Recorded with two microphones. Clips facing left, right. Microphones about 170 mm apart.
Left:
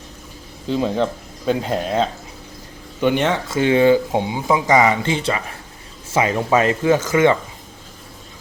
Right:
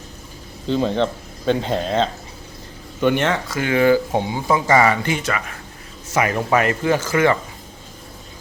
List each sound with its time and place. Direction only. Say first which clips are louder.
0.7 s speech: even; 5° left (ahead or behind); by 7.3 s 20° left (ahead or behind)